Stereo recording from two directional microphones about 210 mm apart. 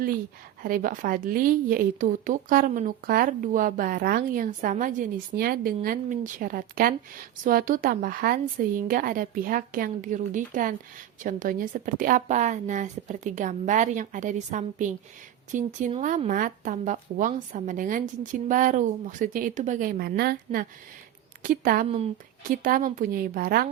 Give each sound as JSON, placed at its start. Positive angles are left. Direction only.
{"t": 0.6, "sound": "speech", "side_deg": -40}
{"t": 21.8, "sound": "speech", "side_deg": -30}
{"t": 22.6, "sound": "a woman's voice", "side_deg": -40}